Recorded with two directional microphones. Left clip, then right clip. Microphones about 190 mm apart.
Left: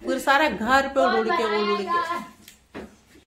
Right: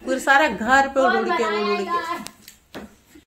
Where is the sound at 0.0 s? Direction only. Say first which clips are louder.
Right 3 dB; 20° right (ahead or behind).